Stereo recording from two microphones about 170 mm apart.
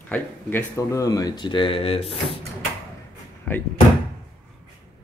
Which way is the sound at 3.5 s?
10° left (ahead or behind).